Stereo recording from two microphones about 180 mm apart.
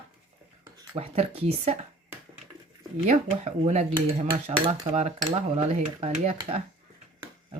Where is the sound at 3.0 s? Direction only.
40° right (ahead or behind).